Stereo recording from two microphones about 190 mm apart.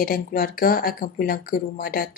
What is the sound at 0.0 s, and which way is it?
A woman's voice, 50° left (ahead or behind).